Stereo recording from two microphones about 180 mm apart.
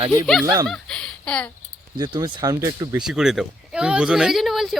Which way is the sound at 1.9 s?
25° right (ahead or behind).